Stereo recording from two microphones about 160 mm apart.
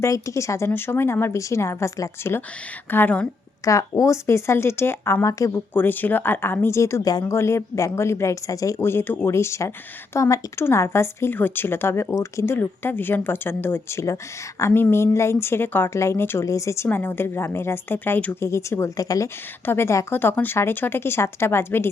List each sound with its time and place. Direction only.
0.0 s a woman's voice: 20° left (ahead or behind)